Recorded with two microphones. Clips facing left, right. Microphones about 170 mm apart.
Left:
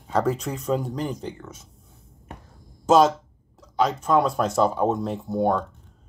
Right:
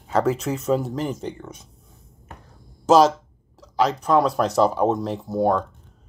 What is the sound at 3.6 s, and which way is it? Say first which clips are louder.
Speech: right 2 dB; centre (ahead or behind).